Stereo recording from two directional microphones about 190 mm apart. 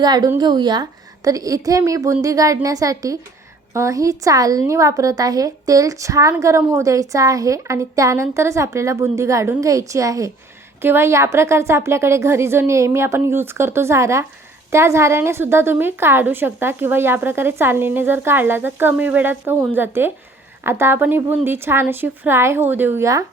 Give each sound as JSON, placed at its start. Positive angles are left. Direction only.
{"t": 0.0, "sound": "a woman's voice", "side_deg": -20}